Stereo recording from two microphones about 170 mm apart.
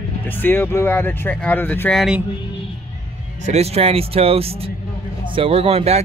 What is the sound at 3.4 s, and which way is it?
Speech, 40° right (ahead or behind).